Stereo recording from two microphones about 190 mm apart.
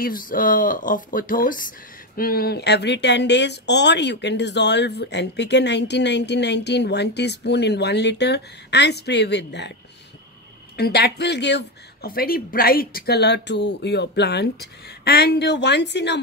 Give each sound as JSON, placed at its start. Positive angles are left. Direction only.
{"t": 0.0, "sound": "speech", "side_deg": 45}
{"t": 10.8, "sound": "speech", "side_deg": 60}